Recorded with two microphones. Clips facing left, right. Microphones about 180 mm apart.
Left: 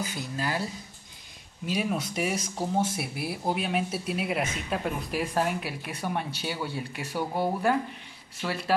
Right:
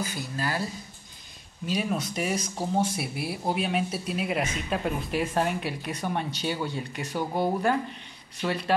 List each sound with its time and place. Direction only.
0.0 s speech: 20° left (ahead or behind)
1.7 s speech: 5° left (ahead or behind)